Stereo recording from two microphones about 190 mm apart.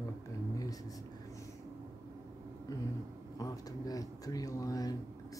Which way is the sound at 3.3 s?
20° left (ahead or behind).